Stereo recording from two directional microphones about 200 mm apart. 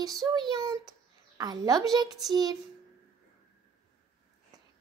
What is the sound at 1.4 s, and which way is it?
Speech, 20° right (ahead or behind).